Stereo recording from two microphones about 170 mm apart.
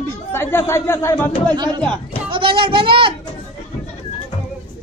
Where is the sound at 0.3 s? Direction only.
15° left (ahead or behind).